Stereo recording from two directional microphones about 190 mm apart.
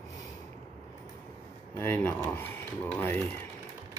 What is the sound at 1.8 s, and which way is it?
Speech, 10° left (ahead or behind).